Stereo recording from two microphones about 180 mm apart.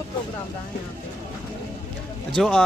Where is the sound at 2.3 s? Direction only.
5° left (ahead or behind).